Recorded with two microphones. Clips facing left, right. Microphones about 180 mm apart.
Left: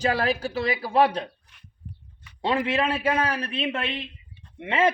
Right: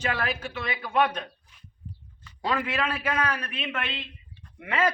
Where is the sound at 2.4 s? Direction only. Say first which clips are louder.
Left 4 dB; 25° left (ahead or behind).